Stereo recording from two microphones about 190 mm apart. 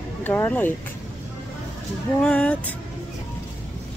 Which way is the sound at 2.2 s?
5° left (ahead or behind).